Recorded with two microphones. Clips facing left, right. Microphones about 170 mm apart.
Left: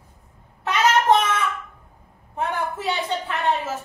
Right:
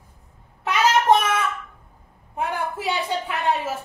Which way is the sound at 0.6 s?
10° right (ahead or behind).